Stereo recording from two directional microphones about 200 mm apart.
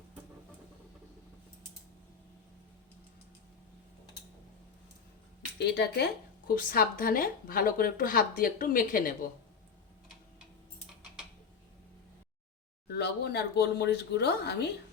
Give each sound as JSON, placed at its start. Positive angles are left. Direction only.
{"t": 5.5, "sound": "speech", "side_deg": 55}
{"t": 12.9, "sound": "speech", "side_deg": 55}